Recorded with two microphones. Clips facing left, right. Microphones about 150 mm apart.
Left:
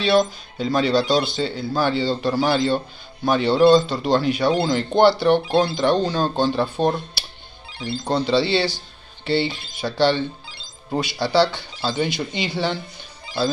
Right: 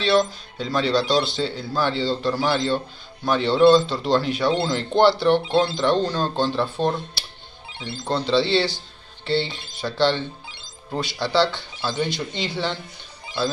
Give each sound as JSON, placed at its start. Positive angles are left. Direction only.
{"t": 0.0, "sound": "speech", "side_deg": 5}
{"t": 7.7, "sound": "music", "side_deg": -20}
{"t": 8.1, "sound": "a man's voice", "side_deg": 5}